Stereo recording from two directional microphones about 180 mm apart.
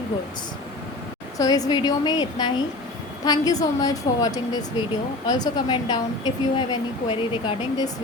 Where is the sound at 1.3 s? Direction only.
20° left (ahead or behind).